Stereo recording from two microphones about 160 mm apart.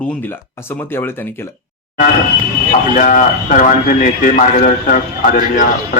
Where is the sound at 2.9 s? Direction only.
60° left (ahead or behind).